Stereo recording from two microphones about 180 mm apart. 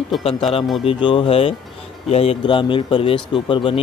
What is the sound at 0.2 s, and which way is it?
Speech, 30° left (ahead or behind).